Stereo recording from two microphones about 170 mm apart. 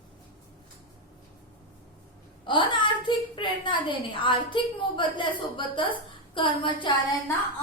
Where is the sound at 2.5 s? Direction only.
30° left (ahead or behind).